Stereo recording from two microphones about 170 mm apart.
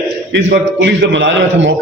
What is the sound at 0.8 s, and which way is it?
Speech, 90° right.